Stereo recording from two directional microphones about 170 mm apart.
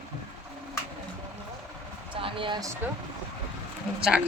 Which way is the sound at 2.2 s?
30° right (ahead or behind).